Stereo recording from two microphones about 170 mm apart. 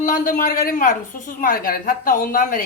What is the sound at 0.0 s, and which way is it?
A man's voice, 50° left (ahead or behind).